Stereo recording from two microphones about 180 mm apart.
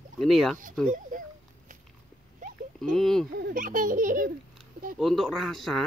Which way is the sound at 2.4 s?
45° right (ahead or behind).